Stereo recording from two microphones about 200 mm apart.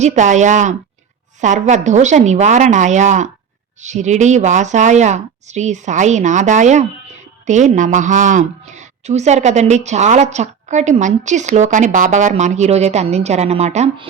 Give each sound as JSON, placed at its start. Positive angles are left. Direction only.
{"t": 0.0, "sound": "a woman's voice", "side_deg": -35}